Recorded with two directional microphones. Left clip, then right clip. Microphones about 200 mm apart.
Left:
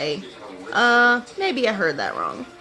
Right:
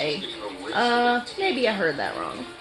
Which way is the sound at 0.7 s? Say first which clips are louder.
Left 5 dB; 25° left (ahead or behind).